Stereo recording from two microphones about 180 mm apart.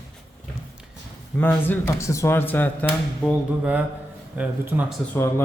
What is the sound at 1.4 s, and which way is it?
Speech, 10° left (ahead or behind).